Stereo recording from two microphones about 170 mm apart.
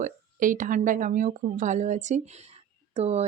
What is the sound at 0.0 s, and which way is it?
Speech, 50° right (ahead or behind).